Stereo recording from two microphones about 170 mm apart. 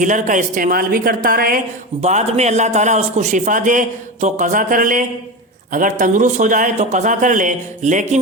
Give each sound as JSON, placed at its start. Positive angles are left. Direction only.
{"t": 0.0, "sound": "a woman's voice", "side_deg": -45}
{"t": 2.0, "sound": "a man's voice", "side_deg": -40}